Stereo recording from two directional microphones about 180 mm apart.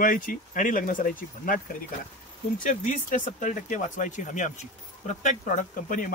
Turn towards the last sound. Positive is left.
turn(degrees=45)  # may be behind; listen again after turning